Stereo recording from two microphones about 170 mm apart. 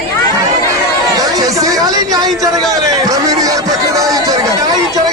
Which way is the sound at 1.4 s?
20° right (ahead or behind).